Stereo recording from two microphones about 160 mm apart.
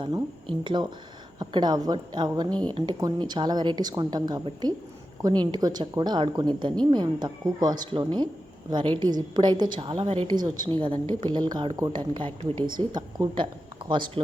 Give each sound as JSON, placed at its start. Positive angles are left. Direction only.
{"t": 0.0, "sound": "a woman's voice", "side_deg": -30}